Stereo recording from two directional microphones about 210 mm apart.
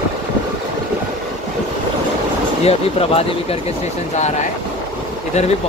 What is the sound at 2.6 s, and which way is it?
Speech, 30° left (ahead or behind).